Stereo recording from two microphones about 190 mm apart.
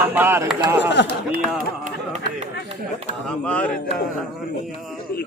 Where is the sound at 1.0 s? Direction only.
65° left (ahead or behind).